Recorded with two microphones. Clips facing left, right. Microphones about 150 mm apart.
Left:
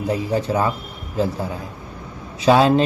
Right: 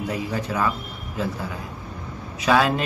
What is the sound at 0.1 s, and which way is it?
A man's voice, 30° left (ahead or behind).